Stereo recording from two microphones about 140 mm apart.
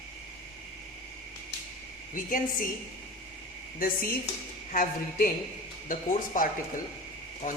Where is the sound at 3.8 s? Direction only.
90° left.